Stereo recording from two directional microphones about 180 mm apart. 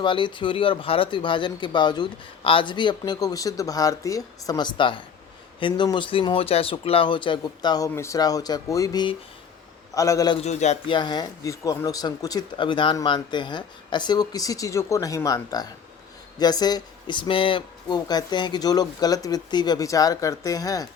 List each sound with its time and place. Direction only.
0.0 s a man's voice: 25° left (ahead or behind)
10.3 s a man's voice: 40° left (ahead or behind)
10.9 s speech: 25° left (ahead or behind)